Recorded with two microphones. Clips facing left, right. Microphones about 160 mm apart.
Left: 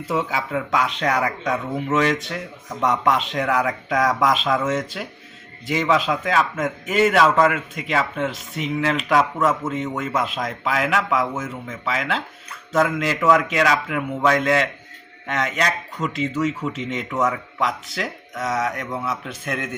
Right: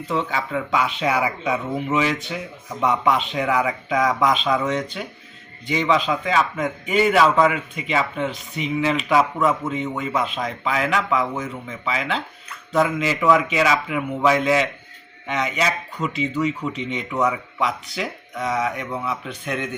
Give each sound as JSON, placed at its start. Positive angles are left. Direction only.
{"t": 0.1, "sound": "a man's voice", "side_deg": 5}